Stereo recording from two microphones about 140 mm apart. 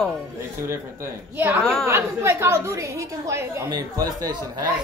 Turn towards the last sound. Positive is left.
turn(degrees=-25)  # may be behind; listen again after turning